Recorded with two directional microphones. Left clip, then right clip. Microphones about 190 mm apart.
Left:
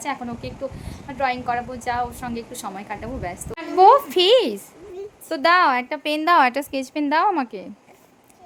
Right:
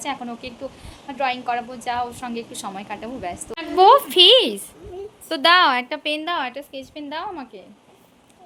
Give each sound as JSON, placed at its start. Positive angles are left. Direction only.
{"t": 0.0, "sound": "a woman's voice", "side_deg": 5}